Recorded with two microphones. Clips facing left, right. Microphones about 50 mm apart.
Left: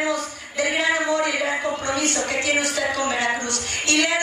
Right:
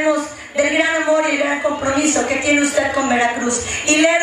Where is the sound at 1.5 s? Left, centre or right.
Centre.